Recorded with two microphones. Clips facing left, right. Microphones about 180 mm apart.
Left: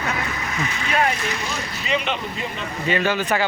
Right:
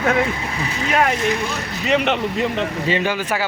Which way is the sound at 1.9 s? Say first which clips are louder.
Right 7 dB; 70° right (ahead or behind).